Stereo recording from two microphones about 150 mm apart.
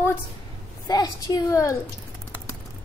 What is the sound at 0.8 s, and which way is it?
Speech, 25° left (ahead or behind).